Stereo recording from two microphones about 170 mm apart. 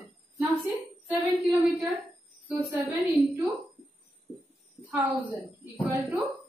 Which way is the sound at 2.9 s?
15° right (ahead or behind).